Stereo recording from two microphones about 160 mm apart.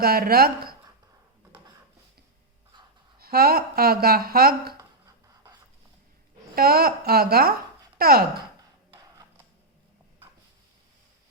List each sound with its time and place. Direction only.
0.0 s speech: 70° right (ahead or behind)
2.7 s a sound: 30° right (ahead or behind)
3.2 s speech: 70° right (ahead or behind)
4.8 s scratch: 20° right (ahead or behind)
6.6 s speech: 70° right (ahead or behind)